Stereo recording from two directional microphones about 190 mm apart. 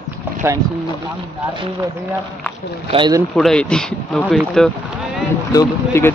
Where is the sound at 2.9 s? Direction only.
25° right (ahead or behind).